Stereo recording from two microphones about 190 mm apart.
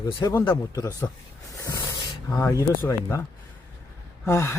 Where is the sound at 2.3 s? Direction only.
15° left (ahead or behind).